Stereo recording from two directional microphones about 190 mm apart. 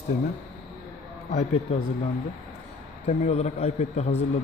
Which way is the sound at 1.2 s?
40° left (ahead or behind).